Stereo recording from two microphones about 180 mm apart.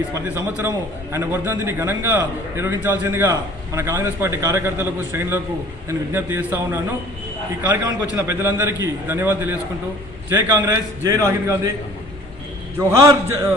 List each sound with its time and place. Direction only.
0.1 s a man's voice: 15° right (ahead or behind)
13.1 s a man's voice: 15° right (ahead or behind)